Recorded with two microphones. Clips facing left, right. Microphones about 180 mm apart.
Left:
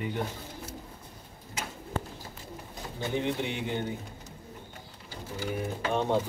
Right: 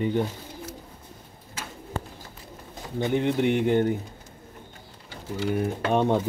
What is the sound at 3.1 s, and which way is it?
Speech, 55° right (ahead or behind).